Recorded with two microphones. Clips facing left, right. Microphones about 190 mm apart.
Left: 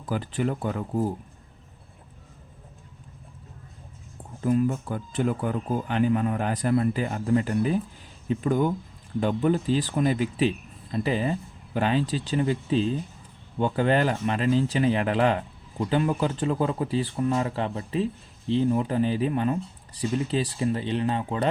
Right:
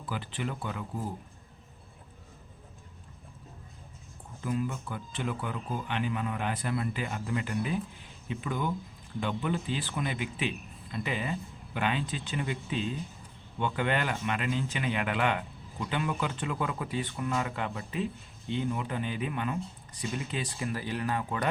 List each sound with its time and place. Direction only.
0.0 s speech: 45° left (ahead or behind)
4.4 s speech: 45° left (ahead or behind); by 21.4 s 25° left (ahead or behind)